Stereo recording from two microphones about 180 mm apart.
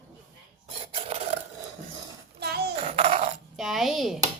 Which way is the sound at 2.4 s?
60° right (ahead or behind).